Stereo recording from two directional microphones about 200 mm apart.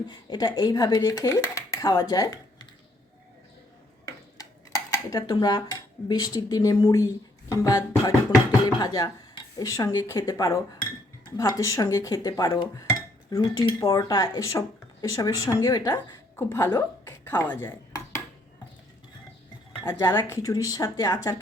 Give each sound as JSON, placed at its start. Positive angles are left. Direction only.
{"t": 0.1, "sound": "speech", "side_deg": 20}
{"t": 4.0, "sound": "dishes", "side_deg": 15}
{"t": 6.1, "sound": "a woman's voice", "side_deg": 20}
{"t": 19.8, "sound": "speech", "side_deg": 15}